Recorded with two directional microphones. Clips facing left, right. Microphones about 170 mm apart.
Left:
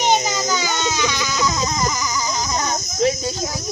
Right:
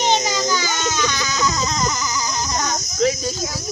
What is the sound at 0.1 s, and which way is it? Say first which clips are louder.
Baby cry: even; 10° left (ahead or behind).